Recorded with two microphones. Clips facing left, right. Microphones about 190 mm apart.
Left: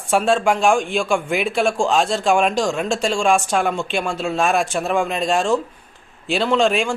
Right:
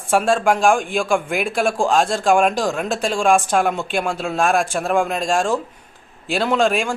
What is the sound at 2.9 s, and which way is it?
Speech, 15° right (ahead or behind).